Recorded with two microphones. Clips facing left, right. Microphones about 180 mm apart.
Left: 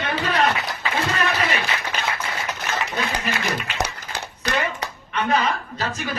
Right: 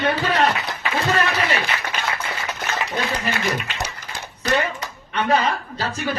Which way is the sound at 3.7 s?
70° left (ahead or behind).